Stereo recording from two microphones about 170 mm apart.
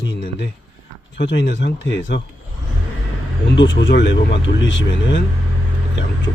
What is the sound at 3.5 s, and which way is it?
Speech, 90° left.